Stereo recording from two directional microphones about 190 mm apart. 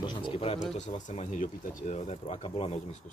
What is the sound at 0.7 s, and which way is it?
Speech, 40° left (ahead or behind).